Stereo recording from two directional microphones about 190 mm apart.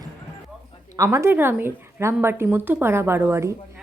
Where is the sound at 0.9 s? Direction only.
15° right (ahead or behind).